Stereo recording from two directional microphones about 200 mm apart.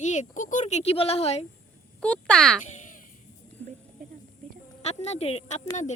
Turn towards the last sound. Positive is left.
turn(degrees=35)  # may be behind; listen again after turning